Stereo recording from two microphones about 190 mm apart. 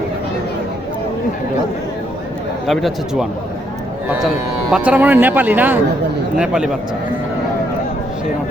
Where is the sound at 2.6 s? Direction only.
Centre (ahead or behind).